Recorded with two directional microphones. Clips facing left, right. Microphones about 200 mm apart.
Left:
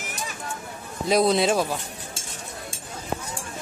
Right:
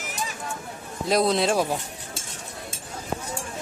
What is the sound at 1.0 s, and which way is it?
Speech, centre (ahead or behind).